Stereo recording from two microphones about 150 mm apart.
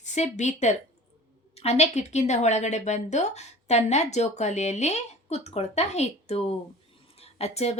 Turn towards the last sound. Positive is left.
turn(degrees=45)  # may be behind; listen again after turning